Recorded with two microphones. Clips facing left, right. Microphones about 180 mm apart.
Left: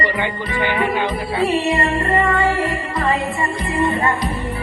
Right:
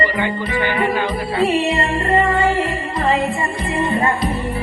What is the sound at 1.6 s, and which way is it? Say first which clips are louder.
Music: even; 20° right (ahead or behind).